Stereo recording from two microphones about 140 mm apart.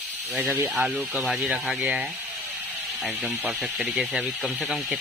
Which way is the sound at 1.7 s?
Centre (ahead or behind).